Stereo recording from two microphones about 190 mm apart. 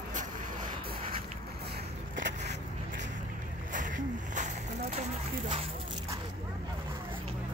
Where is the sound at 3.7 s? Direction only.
40° right (ahead or behind).